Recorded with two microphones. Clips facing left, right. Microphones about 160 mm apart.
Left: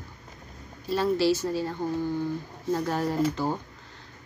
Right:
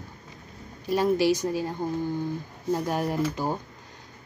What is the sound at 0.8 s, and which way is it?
Speech, 15° right (ahead or behind).